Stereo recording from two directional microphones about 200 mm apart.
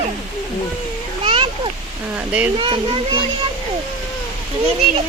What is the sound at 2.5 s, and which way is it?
Speech, 25° right (ahead or behind).